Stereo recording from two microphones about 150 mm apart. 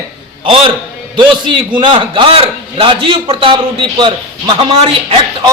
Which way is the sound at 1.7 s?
35° right (ahead or behind).